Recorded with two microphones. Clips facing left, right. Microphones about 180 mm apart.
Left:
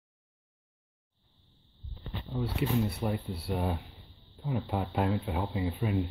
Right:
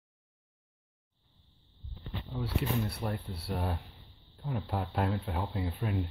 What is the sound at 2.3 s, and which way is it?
A man's voice, centre (ahead or behind).